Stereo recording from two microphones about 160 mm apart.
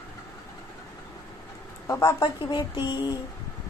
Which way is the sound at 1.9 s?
20° left (ahead or behind).